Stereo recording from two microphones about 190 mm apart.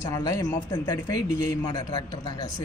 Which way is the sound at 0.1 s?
15° left (ahead or behind).